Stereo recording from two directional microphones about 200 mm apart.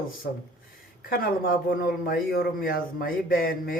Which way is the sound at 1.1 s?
45° left (ahead or behind).